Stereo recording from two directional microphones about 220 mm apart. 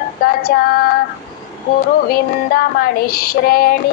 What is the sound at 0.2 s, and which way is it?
Female singing, 40° left (ahead or behind).